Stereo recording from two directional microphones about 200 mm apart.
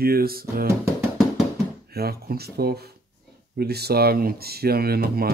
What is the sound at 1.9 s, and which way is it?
Speech, 50° right (ahead or behind).